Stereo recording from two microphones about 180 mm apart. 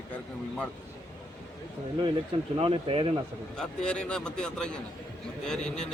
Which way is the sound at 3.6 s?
5° left (ahead or behind).